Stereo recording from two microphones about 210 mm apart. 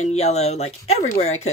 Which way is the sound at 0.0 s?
30° left (ahead or behind).